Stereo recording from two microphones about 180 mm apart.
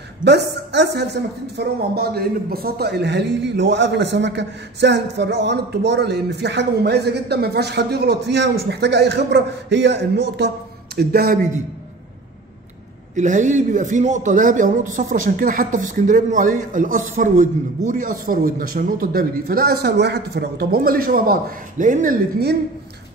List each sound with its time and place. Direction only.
0.2 s speech: 70° right (ahead or behind)
1.6 s speech: 60° right (ahead or behind)
11.0 s speech: 55° right (ahead or behind)
13.1 s a man's voice: 45° right (ahead or behind)